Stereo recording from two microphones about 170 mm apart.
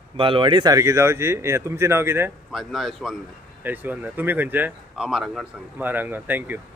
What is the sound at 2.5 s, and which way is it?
Speech, centre (ahead or behind).